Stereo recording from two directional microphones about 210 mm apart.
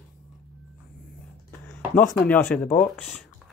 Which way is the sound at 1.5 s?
10° left (ahead or behind).